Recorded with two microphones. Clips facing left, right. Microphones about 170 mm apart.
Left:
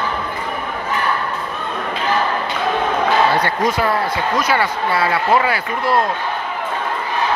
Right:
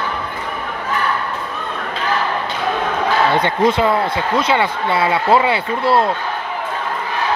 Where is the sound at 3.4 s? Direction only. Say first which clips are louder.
Right 3 dB; 25° right (ahead or behind).